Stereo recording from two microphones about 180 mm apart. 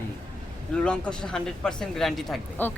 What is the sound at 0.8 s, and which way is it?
A woman's voice, 5° left (ahead or behind).